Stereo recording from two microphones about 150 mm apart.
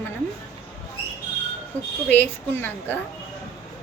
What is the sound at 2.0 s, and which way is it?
Speech, 10° left (ahead or behind).